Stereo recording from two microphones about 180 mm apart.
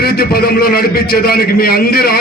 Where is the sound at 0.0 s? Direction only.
60° left (ahead or behind).